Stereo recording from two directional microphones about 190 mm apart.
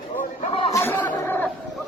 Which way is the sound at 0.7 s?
10° left (ahead or behind).